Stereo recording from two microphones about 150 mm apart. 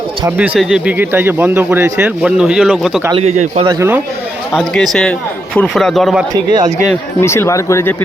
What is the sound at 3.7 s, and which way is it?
Speech, 15° right (ahead or behind).